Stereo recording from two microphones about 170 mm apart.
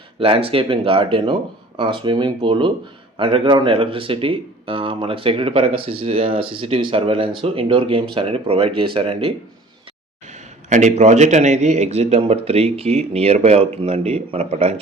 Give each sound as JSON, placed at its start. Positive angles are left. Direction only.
{"t": 0.2, "sound": "a man's voice", "side_deg": -35}
{"t": 10.7, "sound": "a man's voice", "side_deg": -45}